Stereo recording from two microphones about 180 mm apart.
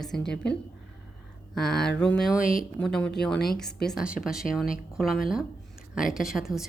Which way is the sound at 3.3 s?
55° left (ahead or behind).